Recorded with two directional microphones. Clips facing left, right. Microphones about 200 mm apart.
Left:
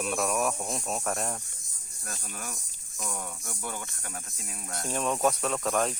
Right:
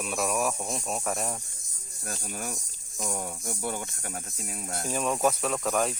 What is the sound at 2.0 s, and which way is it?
Speech, 45° right (ahead or behind).